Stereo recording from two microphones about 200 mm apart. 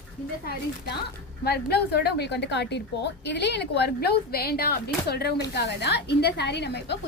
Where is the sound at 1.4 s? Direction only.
50° left (ahead or behind).